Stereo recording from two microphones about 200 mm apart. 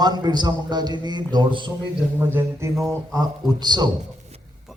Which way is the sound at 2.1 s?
10° right (ahead or behind).